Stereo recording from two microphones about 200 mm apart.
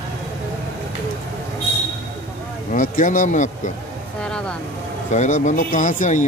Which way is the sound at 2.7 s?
40° left (ahead or behind).